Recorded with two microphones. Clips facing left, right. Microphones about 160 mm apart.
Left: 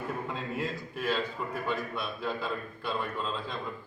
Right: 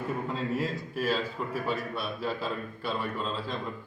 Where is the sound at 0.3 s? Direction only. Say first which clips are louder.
Right 3 dB; centre (ahead or behind).